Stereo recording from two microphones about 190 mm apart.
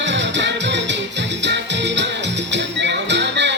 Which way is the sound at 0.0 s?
70° right (ahead or behind).